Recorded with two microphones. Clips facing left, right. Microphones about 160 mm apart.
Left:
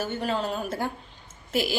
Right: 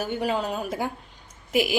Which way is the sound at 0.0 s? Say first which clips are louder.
Right 2 dB; 15° right (ahead or behind).